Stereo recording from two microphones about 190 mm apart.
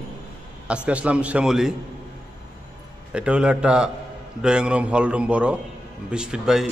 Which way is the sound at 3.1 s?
5° right (ahead or behind).